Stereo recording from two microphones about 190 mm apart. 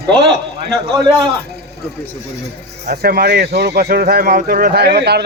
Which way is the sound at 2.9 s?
55° right (ahead or behind).